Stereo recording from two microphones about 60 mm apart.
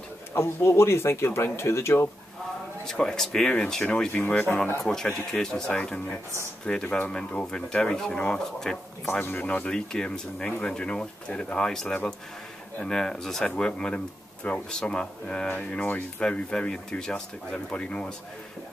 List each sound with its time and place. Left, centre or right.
0.3 s speech: left
2.9 s speech: centre
9.2 s speech: left